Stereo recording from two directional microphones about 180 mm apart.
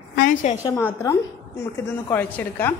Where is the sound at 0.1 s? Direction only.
45° left (ahead or behind).